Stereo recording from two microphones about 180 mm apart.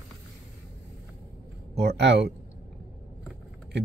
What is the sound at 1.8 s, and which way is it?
Speech, 70° right (ahead or behind).